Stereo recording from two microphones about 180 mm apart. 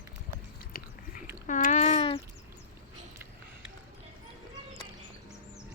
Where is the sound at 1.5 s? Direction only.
45° left (ahead or behind).